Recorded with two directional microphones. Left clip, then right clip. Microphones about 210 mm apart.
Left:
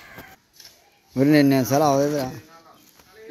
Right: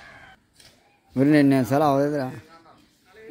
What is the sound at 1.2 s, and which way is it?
Speech, centre (ahead or behind).